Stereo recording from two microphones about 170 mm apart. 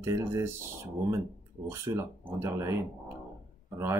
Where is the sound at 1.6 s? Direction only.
15° right (ahead or behind).